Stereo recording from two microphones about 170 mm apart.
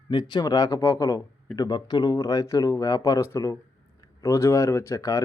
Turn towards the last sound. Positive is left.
turn(degrees=20)  # may be behind; listen again after turning